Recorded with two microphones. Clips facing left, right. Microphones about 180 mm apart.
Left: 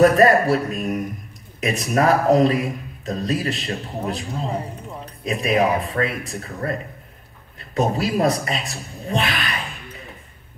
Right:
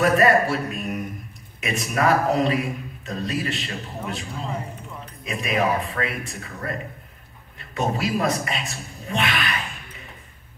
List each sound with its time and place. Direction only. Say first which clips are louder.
0.0 s a man's voice: left 4 dB; 35° left (ahead or behind)
7.7 s a man's voice: left 3 dB; 35° left (ahead or behind)